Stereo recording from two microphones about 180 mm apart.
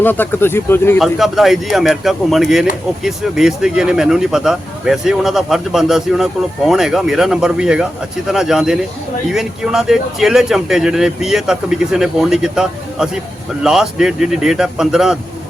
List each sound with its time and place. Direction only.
0.0 s speech: 10° left (ahead or behind)
0.9 s speech: centre (ahead or behind)